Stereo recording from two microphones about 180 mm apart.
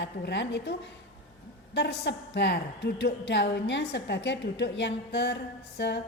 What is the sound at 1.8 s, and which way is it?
A woman's voice, 70° left (ahead or behind).